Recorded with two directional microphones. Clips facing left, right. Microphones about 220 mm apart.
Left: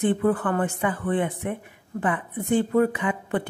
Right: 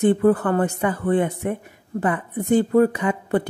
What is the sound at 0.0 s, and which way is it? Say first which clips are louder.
Speech: right 5 dB; 40° right (ahead or behind).